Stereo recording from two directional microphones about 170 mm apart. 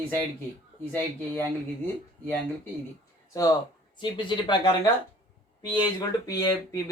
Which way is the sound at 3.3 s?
20° left (ahead or behind).